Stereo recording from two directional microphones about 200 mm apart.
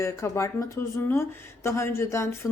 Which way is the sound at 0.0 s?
15° left (ahead or behind).